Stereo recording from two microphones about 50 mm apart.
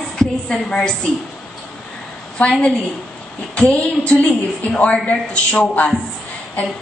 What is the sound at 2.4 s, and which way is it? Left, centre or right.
A man's voice, left.